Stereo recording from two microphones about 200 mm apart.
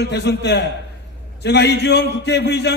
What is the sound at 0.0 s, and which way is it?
A man's voice, 60° left (ahead or behind).